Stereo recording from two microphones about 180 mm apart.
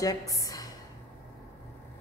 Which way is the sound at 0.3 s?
20° left (ahead or behind).